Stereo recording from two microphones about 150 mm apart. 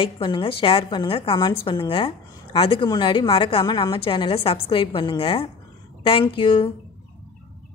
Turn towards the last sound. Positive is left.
turn(degrees=35)  # may be behind; listen again after turning